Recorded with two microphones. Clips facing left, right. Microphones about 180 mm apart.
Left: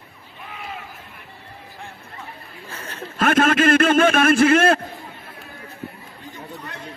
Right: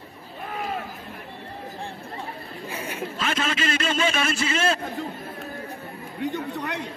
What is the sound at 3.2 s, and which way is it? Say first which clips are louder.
A man's voice: left 11 dB; 55° left (ahead or behind).